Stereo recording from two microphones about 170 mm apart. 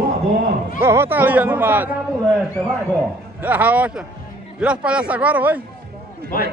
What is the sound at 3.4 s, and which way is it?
A man's voice, 10° right (ahead or behind).